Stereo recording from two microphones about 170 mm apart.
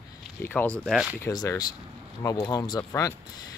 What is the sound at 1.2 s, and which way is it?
Speech, 20° left (ahead or behind).